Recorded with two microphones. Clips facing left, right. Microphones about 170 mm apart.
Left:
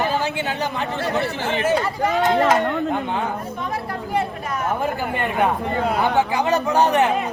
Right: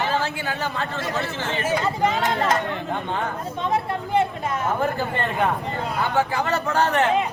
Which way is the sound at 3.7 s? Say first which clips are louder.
Right 4 dB; 25° right (ahead or behind).